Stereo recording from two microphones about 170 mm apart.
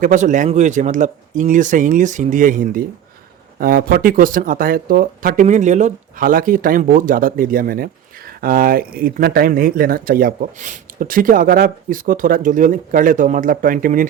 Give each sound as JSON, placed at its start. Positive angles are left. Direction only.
{"t": 0.0, "sound": "speech", "side_deg": -50}